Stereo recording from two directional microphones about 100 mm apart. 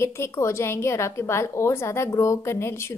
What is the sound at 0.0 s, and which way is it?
A woman's voice, 25° left (ahead or behind).